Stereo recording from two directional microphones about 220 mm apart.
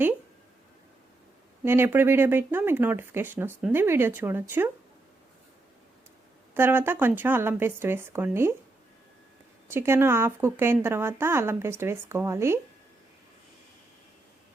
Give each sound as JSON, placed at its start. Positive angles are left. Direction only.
{"t": 1.6, "sound": "speech", "side_deg": -10}
{"t": 6.5, "sound": "speech", "side_deg": -10}
{"t": 9.6, "sound": "speech", "side_deg": -10}